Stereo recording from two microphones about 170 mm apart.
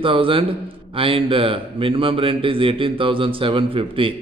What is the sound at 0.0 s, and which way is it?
Speech, 30° right (ahead or behind).